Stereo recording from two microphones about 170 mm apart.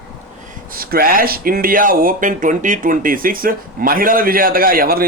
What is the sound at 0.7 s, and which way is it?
Speech, 60° right (ahead or behind).